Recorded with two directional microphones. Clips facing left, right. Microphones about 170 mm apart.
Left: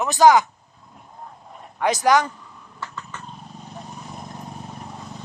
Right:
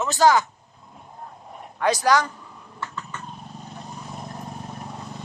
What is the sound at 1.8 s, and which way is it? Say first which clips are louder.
Speech: left 2 dB; 20° left (ahead or behind).